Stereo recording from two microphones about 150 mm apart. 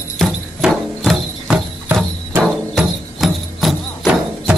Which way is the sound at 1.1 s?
10° right (ahead or behind).